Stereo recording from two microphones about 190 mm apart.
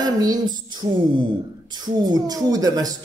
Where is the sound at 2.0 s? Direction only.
20° right (ahead or behind).